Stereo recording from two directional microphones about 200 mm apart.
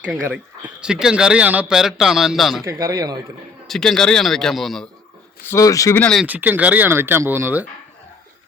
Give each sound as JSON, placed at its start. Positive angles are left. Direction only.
{"t": 0.0, "sound": "speech", "side_deg": -5}
{"t": 2.6, "sound": "speech", "side_deg": -15}
{"t": 3.7, "sound": "speech", "side_deg": 5}
{"t": 5.5, "sound": "speech", "side_deg": 15}
{"t": 6.2, "sound": "speech", "side_deg": -10}